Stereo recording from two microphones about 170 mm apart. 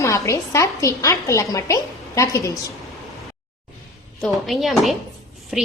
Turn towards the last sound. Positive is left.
turn(degrees=0)  # may be behind; listen again after turning